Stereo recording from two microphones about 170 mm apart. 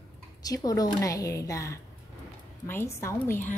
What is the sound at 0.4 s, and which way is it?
A woman's voice, 20° left (ahead or behind).